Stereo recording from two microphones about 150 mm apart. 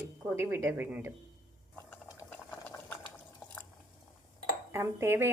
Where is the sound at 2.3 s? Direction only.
10° left (ahead or behind).